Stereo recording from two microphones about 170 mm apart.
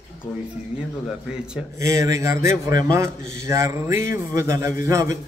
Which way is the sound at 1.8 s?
20° right (ahead or behind).